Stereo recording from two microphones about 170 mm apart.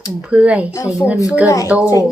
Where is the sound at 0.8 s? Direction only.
20° left (ahead or behind).